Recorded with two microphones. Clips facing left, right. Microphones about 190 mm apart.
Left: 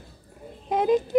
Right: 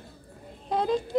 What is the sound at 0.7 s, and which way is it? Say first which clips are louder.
Child singing: left 5 dB; 20° left (ahead or behind).